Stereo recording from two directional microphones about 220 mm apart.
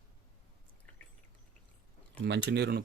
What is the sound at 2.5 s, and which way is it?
Speech, 50° right (ahead or behind).